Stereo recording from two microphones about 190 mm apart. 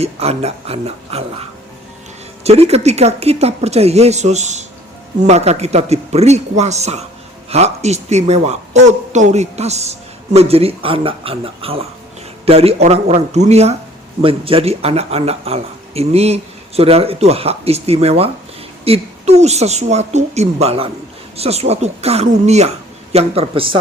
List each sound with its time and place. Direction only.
0.0 s speech: 35° right (ahead or behind)